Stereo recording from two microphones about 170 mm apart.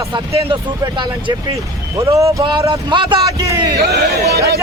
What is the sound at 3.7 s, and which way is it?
Speech, 75° right (ahead or behind).